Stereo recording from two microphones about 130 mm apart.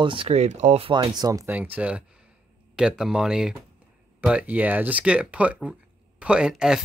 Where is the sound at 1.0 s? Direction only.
25° right (ahead or behind).